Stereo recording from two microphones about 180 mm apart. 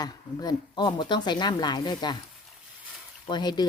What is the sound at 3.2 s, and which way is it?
Speech, 25° left (ahead or behind).